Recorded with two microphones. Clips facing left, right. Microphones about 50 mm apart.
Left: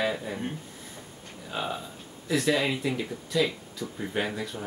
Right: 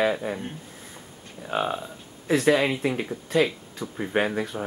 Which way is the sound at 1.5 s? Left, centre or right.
Right.